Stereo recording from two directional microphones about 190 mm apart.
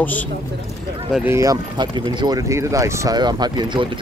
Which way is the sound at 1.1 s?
10° right (ahead or behind).